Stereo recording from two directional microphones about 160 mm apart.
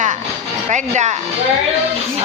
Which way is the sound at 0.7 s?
45° right (ahead or behind).